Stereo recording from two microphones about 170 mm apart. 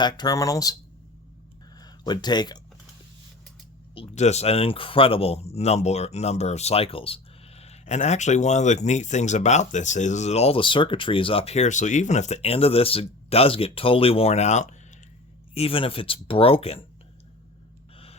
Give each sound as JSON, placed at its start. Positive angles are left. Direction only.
{"t": 0.0, "sound": "speech", "side_deg": 25}
{"t": 1.8, "sound": "speech", "side_deg": 25}
{"t": 3.9, "sound": "speech", "side_deg": 35}
{"t": 17.9, "sound": "gasp", "side_deg": 35}